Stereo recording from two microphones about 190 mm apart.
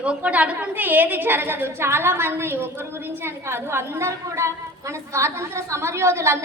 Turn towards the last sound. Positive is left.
turn(degrees=-15)  # may be behind; listen again after turning